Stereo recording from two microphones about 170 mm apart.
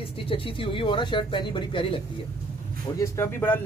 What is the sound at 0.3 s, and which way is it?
Speech, 30° left (ahead or behind).